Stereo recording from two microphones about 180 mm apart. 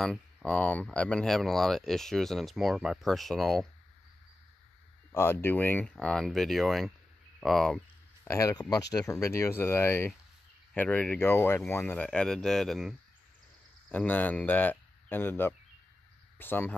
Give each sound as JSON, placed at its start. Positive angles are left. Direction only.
{"t": 0.0, "sound": "speech", "side_deg": 0}
{"t": 5.1, "sound": "speech", "side_deg": 15}
{"t": 7.3, "sound": "a sound", "side_deg": 0}
{"t": 8.3, "sound": "speech", "side_deg": 15}